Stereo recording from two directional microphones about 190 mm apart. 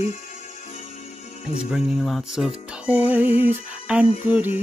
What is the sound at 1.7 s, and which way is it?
Music, centre (ahead or behind).